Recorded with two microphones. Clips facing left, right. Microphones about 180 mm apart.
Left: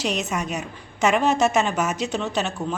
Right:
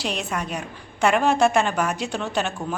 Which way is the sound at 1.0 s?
Centre (ahead or behind).